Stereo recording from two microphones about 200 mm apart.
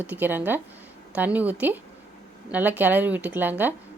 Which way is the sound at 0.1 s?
10° right (ahead or behind).